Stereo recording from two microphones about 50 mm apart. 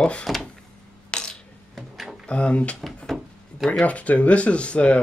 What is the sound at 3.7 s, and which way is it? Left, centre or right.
Speech, left.